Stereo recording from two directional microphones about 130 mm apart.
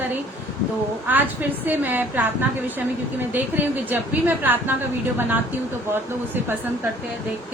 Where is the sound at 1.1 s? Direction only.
15° right (ahead or behind).